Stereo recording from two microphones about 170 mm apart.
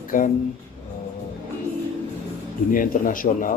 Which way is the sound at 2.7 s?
55° left (ahead or behind).